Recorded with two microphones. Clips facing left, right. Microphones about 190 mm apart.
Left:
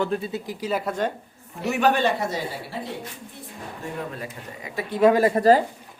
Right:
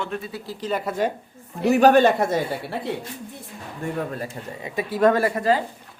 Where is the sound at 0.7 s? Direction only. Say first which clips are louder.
Even; 5° left (ahead or behind).